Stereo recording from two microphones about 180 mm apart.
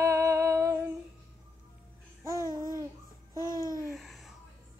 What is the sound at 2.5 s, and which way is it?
Babbling, 50° right (ahead or behind).